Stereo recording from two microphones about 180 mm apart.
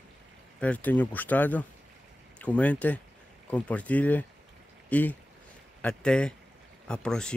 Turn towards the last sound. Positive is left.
turn(degrees=5)  # may be behind; listen again after turning